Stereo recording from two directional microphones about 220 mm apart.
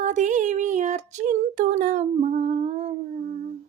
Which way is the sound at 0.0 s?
35° right (ahead or behind).